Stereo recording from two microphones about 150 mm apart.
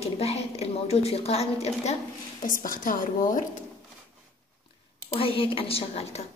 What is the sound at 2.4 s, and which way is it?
A woman's voice, 65° left (ahead or behind).